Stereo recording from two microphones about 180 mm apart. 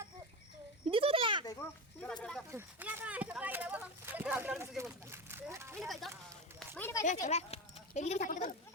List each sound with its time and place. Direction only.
0.9 s a sound: 30° right (ahead or behind)
2.0 s speech: 5° left (ahead or behind)
2.5 s speech: 10° right (ahead or behind)
5.7 s speech: centre (ahead or behind)
6.7 s speech: 10° left (ahead or behind)
7.0 s speech: 40° left (ahead or behind)